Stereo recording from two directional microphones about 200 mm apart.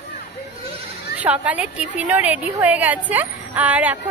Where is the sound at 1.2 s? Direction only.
5° right (ahead or behind).